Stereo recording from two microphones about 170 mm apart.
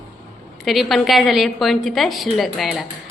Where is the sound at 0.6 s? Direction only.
Centre (ahead or behind).